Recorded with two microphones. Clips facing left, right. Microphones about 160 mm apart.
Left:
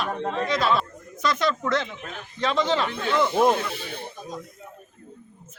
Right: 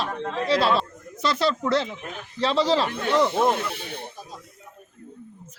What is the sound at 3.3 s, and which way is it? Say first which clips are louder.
Speech: left 2 dB; 15° left (ahead or behind).